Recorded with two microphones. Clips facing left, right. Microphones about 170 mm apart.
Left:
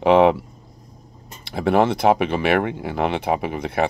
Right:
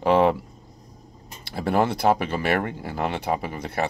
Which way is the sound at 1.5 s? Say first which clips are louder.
Left 4 dB; 65° left (ahead or behind).